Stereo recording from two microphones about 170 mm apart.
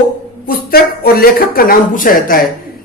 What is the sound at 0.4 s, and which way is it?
A woman's voice, 65° left (ahead or behind).